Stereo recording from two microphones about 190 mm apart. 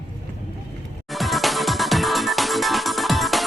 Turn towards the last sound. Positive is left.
turn(degrees=0)  # may be behind; listen again after turning